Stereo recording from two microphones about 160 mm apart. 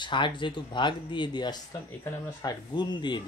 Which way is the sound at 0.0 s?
30° left (ahead or behind).